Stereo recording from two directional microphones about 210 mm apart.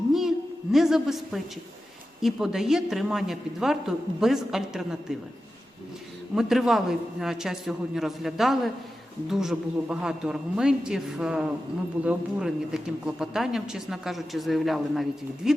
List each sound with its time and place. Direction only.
0.1 s a sound: centre (ahead or behind)
2.2 s speech: centre (ahead or behind)
6.3 s speech: centre (ahead or behind)